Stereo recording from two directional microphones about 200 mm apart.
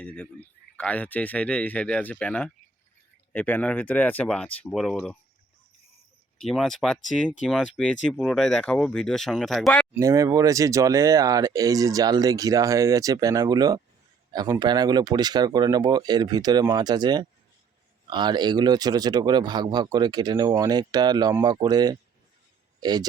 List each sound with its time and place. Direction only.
0.0 s speech: 5° left (ahead or behind)
6.4 s speech: centre (ahead or behind)
10.0 s speech: 15° right (ahead or behind)